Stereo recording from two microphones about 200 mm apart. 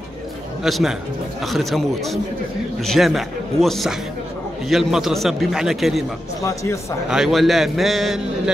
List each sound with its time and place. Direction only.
0.7 s a man's voice: centre (ahead or behind)
6.4 s speech: 15° left (ahead or behind)
7.1 s a man's voice: centre (ahead or behind)